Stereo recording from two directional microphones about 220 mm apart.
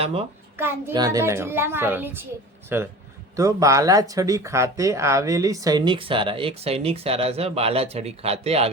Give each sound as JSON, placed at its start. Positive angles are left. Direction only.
{"t": 0.0, "sound": "speech", "side_deg": -25}
{"t": 0.5, "sound": "a child's voice", "side_deg": -10}